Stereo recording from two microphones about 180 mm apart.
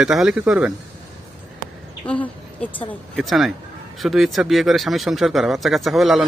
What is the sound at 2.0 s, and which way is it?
Speech, 25° left (ahead or behind).